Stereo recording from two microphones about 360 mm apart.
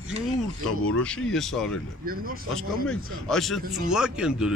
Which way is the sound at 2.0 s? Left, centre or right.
Right.